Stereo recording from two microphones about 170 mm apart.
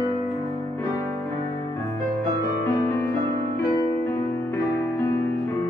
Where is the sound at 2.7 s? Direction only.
15° left (ahead or behind).